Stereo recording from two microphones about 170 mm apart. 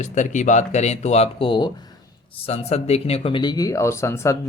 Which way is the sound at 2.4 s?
40° left (ahead or behind).